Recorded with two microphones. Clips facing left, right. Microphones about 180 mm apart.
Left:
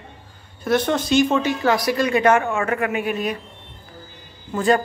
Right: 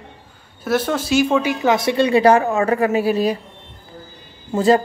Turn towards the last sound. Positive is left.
turn(degrees=-30)  # may be behind; listen again after turning